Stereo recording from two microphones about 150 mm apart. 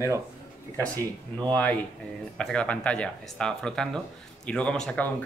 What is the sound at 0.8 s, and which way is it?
Speech, 20° right (ahead or behind).